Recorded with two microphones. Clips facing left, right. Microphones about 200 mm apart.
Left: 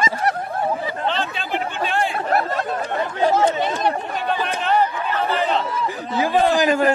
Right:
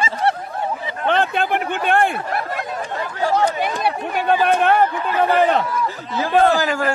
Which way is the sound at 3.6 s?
10° right (ahead or behind).